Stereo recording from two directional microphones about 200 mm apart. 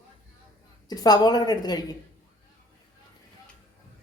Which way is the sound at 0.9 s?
20° left (ahead or behind).